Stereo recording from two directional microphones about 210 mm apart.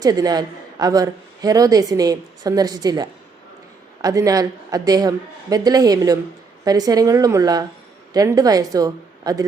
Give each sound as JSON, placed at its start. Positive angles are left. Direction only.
{"t": 0.0, "sound": "a woman's voice", "side_deg": -20}